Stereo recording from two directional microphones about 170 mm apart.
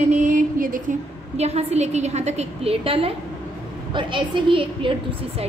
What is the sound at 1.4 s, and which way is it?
A woman's voice, 40° right (ahead or behind).